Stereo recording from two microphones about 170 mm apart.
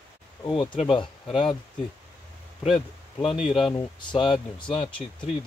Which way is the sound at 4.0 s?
30° left (ahead or behind).